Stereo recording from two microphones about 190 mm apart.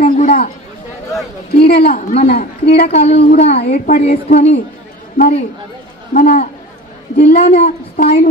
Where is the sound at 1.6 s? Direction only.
60° left (ahead or behind).